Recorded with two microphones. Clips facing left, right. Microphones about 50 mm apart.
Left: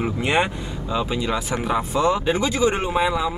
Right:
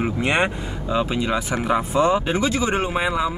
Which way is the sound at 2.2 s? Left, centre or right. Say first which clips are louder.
Left 2 dB; right.